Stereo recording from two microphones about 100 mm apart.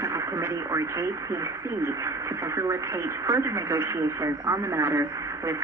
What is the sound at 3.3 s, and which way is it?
Speech, 25° right (ahead or behind).